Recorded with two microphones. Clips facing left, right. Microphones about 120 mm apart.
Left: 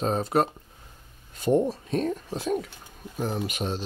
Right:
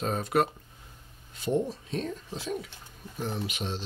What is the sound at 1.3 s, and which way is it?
Speech, 50° left (ahead or behind).